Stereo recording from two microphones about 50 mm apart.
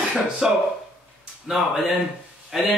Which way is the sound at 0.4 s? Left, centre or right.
Centre.